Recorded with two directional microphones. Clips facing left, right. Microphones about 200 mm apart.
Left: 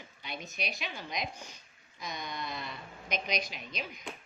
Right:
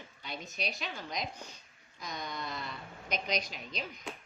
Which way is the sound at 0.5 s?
35° right (ahead or behind).